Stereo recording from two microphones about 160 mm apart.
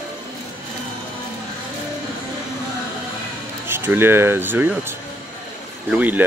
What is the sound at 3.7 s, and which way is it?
Speech, 15° right (ahead or behind).